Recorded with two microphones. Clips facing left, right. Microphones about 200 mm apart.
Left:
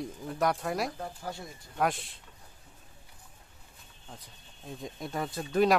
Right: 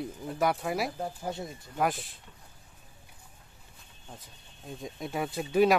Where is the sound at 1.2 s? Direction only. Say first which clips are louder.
Right 4 dB; 20° right (ahead or behind).